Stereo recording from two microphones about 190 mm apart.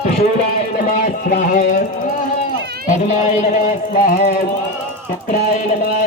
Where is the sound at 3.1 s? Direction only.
40° left (ahead or behind).